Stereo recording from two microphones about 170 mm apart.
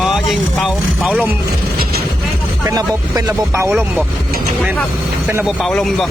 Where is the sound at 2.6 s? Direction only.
20° right (ahead or behind).